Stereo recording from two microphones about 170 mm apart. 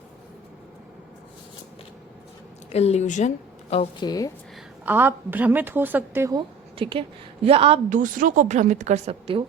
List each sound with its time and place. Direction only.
2.7 s a woman's voice: 40° left (ahead or behind)
4.0 s speech: 20° left (ahead or behind)
4.9 s a woman's voice: 10° right (ahead or behind)
6.3 s a woman's voice: 30° right (ahead or behind)
7.9 s a woman's voice: 50° right (ahead or behind); by 9.4 s 35° right (ahead or behind)